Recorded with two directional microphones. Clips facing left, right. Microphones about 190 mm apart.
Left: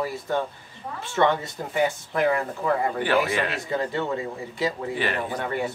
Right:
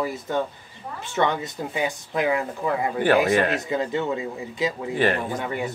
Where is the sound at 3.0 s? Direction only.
45° right (ahead or behind).